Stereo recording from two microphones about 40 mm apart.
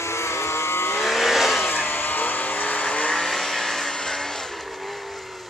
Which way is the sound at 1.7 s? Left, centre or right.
Left.